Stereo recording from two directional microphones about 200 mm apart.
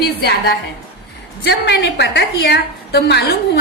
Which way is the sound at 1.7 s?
55° left (ahead or behind).